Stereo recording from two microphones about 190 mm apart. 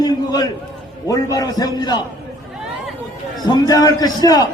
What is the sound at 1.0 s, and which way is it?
A man's voice, 20° left (ahead or behind).